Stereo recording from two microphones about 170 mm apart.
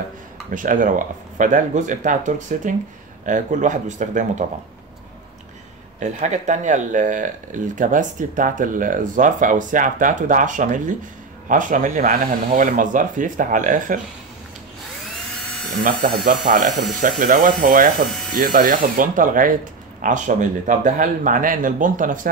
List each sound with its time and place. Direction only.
0.5 s speech: 50° right (ahead or behind)
5.9 s speech: 45° right (ahead or behind)
15.8 s speech: 55° right (ahead or behind)